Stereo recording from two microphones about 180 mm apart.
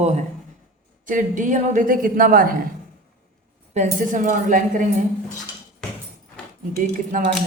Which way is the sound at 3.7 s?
45° right (ahead or behind).